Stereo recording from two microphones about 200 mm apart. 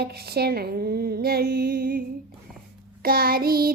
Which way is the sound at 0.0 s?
50° right (ahead or behind).